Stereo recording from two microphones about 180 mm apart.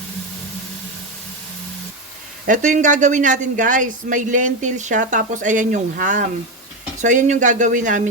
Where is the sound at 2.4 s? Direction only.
45° right (ahead or behind).